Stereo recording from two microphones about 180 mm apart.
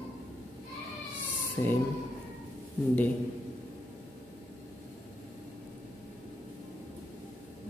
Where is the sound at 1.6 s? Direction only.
15° left (ahead or behind).